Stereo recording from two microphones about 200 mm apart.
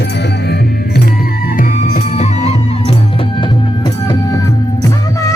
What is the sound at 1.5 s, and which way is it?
Music, 35° left (ahead or behind).